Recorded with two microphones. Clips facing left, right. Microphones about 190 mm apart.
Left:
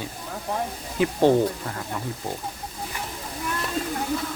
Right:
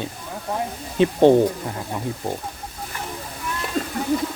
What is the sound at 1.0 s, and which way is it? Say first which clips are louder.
Speech: right 5 dB; 20° right (ahead or behind).